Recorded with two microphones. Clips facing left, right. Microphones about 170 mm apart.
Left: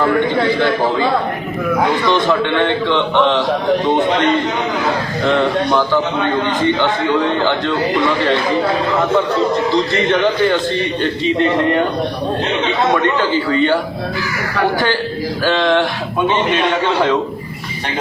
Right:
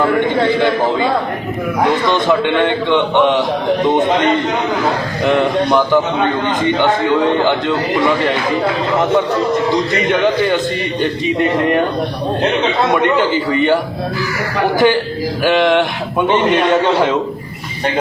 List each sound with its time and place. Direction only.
2.0 s a man's voice: 20° right (ahead or behind)
5.2 s a man's voice: 15° right (ahead or behind)
9.7 s a man's voice: 20° right (ahead or behind)
13.5 s speech: 20° right (ahead or behind)
15.4 s speech: 20° right (ahead or behind)